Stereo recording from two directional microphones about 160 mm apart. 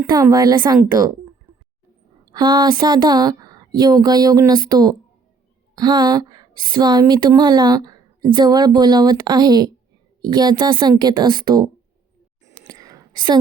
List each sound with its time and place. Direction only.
0.1 s a woman's voice: 25° right (ahead or behind)
2.3 s a woman's voice: 25° right (ahead or behind)
12.6 s whispering: 20° right (ahead or behind)